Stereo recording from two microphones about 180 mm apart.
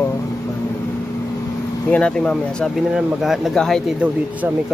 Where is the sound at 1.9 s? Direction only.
5° left (ahead or behind).